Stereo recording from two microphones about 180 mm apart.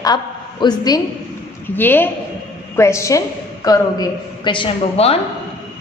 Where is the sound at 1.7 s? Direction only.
10° left (ahead or behind); by 5.1 s 30° left (ahead or behind).